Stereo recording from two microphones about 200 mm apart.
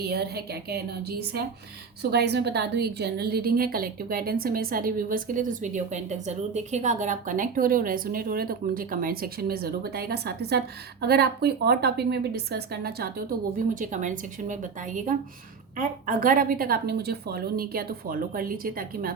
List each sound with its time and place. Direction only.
0.1 s a woman's voice: 50° right (ahead or behind)
2.0 s a woman's voice: 55° right (ahead or behind)
13.7 s a woman's voice: 40° right (ahead or behind)